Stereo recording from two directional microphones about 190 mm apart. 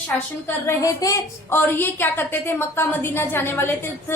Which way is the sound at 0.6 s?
15° left (ahead or behind).